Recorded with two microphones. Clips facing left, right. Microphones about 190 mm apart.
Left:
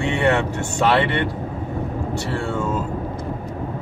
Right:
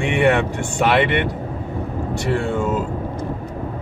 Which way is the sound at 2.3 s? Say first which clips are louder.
Right 6 dB; 15° right (ahead or behind).